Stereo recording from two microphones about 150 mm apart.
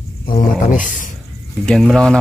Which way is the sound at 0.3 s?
60° left (ahead or behind).